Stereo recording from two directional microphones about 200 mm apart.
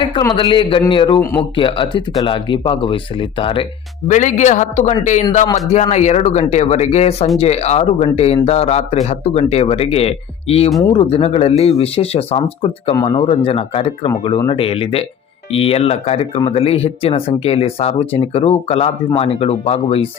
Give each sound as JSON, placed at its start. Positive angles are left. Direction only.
{"t": 0.0, "sound": "speech", "side_deg": 20}
{"t": 4.1, "sound": "a man's voice", "side_deg": 35}